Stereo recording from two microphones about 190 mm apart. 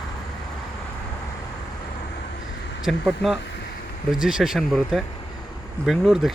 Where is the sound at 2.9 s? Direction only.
Centre (ahead or behind).